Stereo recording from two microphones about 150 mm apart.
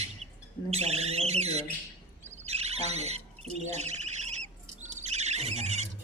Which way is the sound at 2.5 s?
45° right (ahead or behind).